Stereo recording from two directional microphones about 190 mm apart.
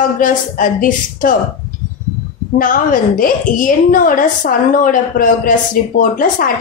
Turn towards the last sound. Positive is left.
turn(degrees=45)  # may be behind; listen again after turning